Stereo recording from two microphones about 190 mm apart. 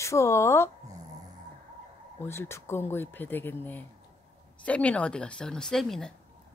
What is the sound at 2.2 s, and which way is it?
A woman's voice, 15° left (ahead or behind).